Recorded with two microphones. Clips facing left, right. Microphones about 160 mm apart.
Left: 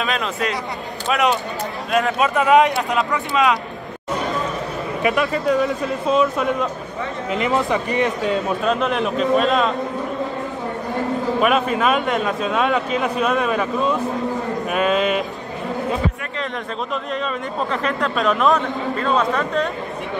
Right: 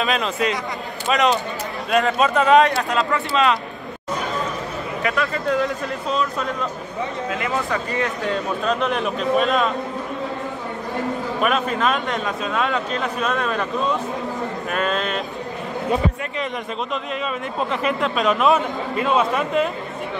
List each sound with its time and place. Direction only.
0.0 s speech: centre (ahead or behind)
2.5 s speech: 20° left (ahead or behind)
5.0 s speech: 15° left (ahead or behind)
8.6 s speech: centre (ahead or behind)
11.4 s speech: 5° left (ahead or behind)
16.9 s a man's voice: centre (ahead or behind)